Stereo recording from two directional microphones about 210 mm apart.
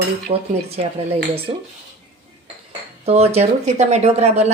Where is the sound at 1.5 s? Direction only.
30° right (ahead or behind).